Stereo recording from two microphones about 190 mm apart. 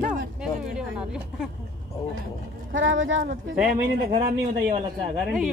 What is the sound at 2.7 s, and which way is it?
Speech, 85° right.